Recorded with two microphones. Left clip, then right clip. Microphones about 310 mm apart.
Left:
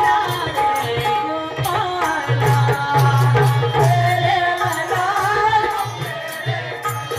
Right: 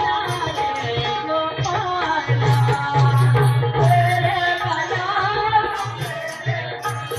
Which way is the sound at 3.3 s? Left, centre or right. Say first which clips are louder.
Left 3 dB; centre.